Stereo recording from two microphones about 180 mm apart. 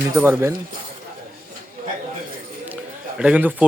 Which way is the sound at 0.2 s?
10° right (ahead or behind).